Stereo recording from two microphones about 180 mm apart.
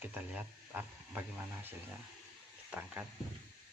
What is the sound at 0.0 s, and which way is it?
Speech, 10° right (ahead or behind).